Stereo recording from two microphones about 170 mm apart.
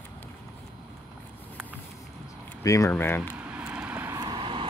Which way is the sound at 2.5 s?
20° left (ahead or behind).